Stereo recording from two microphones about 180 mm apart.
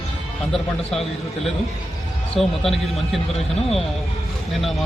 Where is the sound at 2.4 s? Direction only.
Centre (ahead or behind).